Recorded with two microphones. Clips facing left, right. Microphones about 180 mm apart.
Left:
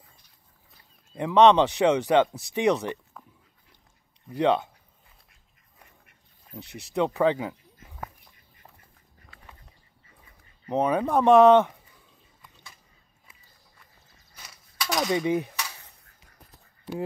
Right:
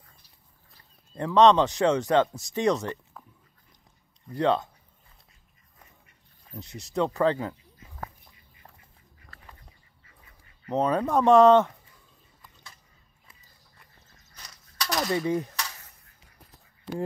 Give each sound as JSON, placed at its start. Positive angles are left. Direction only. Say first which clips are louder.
{"t": 1.1, "sound": "speech", "louder": "left 1 dB", "side_deg": 15}
{"t": 4.3, "sound": "speech", "louder": "left 1 dB", "side_deg": 15}
{"t": 6.6, "sound": "speech", "louder": "even", "side_deg": 65}
{"t": 6.9, "sound": "speech", "louder": "left 1 dB", "side_deg": 10}
{"t": 10.7, "sound": "speech", "louder": "left 1 dB", "side_deg": 10}
{"t": 14.3, "sound": "mechanisms", "louder": "left 1 dB", "side_deg": 5}
{"t": 15.1, "sound": "a sound", "louder": "left 1 dB", "side_deg": 15}